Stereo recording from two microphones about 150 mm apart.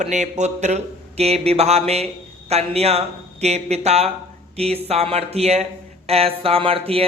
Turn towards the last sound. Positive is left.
turn(degrees=-40)  # may be behind; listen again after turning